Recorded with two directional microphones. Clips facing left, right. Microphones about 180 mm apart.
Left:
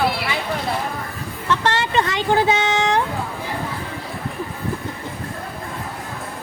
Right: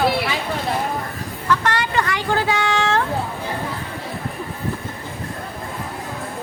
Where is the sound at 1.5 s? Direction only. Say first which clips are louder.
Even; 25° left (ahead or behind).